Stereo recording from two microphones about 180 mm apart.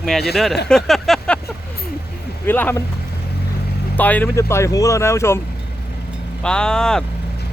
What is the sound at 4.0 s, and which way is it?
Speech, 10° left (ahead or behind).